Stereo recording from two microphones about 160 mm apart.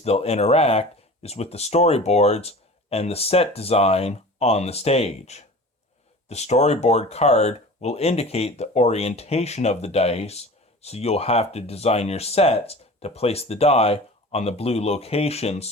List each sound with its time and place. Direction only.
0.0 s speech: 40° left (ahead or behind)